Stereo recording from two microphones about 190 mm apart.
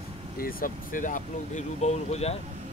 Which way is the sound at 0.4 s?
50° left (ahead or behind).